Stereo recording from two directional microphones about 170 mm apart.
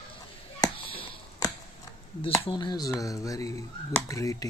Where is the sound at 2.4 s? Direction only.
25° left (ahead or behind).